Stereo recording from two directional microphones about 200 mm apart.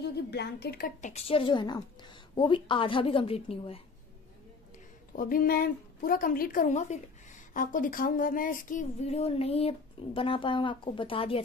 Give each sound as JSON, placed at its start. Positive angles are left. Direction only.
{"t": 0.0, "sound": "a woman's voice", "side_deg": 55}
{"t": 1.1, "sound": "a woman's voice", "side_deg": 30}
{"t": 5.1, "sound": "a woman's voice", "side_deg": 45}